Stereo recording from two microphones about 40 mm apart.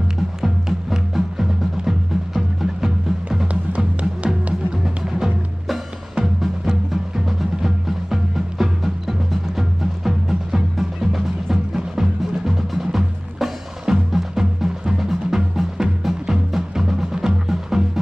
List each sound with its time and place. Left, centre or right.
0.4 s music: centre
3.7 s music: right
4.8 s music: centre